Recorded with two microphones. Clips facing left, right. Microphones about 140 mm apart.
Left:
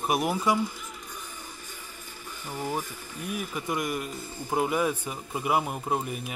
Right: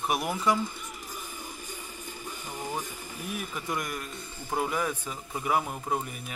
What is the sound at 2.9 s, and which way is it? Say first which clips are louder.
Speech: even; 15° right (ahead or behind).